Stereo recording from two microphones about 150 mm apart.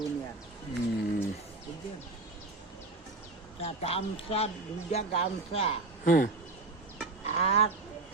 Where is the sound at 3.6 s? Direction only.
45° left (ahead or behind).